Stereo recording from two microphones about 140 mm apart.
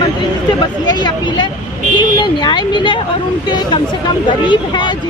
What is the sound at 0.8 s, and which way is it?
Speech, 30° left (ahead or behind).